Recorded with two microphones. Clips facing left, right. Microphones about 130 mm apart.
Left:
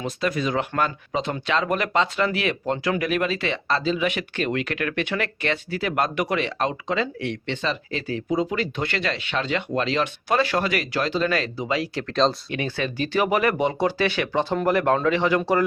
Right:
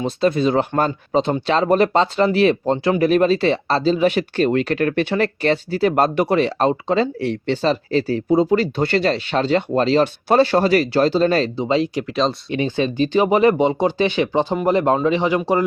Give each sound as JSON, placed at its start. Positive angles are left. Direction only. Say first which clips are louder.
{"t": 0.0, "sound": "speech", "louder": "right 7 dB", "side_deg": -30}
{"t": 11.9, "sound": "speech", "louder": "right 1 dB", "side_deg": -5}
{"t": 12.5, "sound": "speech", "louder": "right 7 dB", "side_deg": -20}